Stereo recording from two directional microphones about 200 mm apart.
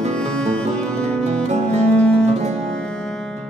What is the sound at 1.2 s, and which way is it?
Music, 35° right (ahead or behind).